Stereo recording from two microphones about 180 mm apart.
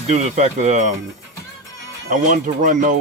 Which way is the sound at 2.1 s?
45° right (ahead or behind).